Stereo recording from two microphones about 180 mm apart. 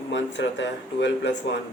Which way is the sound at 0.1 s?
85° left.